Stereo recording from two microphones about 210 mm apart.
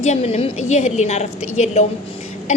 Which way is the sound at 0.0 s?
30° left (ahead or behind).